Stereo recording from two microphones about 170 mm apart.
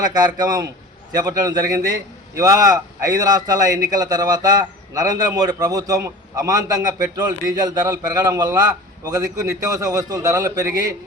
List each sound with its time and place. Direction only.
0.0 s a man's voice: 20° right (ahead or behind)